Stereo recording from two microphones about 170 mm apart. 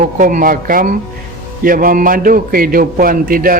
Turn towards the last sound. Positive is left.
turn(degrees=-55)  # may be behind; listen again after turning